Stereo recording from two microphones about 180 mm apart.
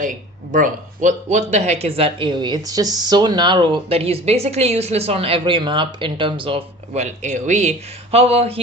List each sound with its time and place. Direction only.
0.5 s speech: 45° right (ahead or behind)